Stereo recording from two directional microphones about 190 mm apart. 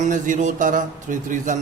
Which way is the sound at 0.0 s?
40° right (ahead or behind).